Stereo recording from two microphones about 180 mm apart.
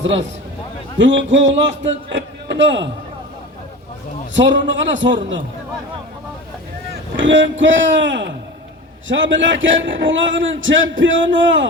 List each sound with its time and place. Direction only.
0.0 s a man's voice: 90° right
4.5 s a man's voice: 90° right
7.2 s a man's voice: 90° right